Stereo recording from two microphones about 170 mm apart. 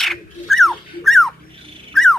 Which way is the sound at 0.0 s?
Centre (ahead or behind).